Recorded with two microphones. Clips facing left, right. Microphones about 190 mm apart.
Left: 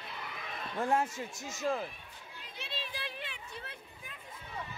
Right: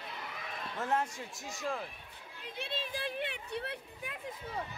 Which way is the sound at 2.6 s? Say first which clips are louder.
Right 4 dB; 50° right (ahead or behind).